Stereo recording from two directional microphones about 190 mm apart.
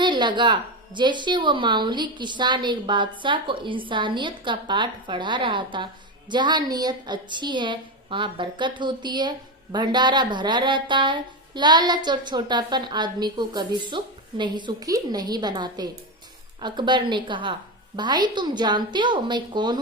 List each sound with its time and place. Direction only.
0.0 s a woman's voice: 25° right (ahead or behind)